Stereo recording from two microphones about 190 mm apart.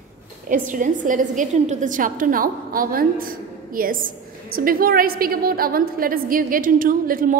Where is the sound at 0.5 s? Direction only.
45° right (ahead or behind).